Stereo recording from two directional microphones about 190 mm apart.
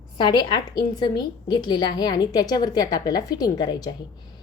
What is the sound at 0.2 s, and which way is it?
A woman's voice, 20° left (ahead or behind).